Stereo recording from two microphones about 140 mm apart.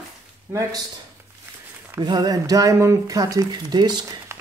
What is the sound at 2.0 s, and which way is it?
Speech, 30° right (ahead or behind).